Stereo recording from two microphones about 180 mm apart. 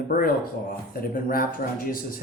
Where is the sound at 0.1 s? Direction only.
50° left (ahead or behind).